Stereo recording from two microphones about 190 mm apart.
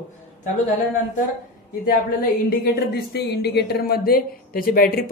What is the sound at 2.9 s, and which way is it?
Speech, 60° left (ahead or behind).